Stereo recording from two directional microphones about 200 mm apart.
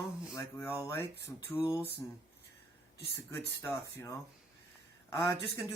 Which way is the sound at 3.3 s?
15° left (ahead or behind).